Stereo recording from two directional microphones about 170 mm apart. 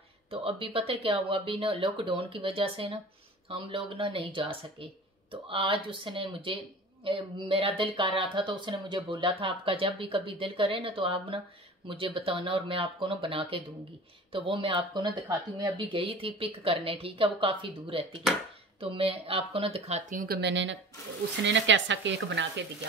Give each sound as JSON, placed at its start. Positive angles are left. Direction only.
{"t": 0.3, "sound": "speech", "side_deg": -35}
{"t": 20.2, "sound": "speech", "side_deg": -70}